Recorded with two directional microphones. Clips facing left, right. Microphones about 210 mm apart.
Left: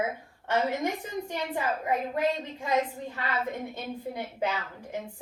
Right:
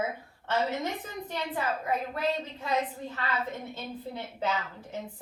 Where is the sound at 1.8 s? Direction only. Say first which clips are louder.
Left 5 dB; 15° left (ahead or behind).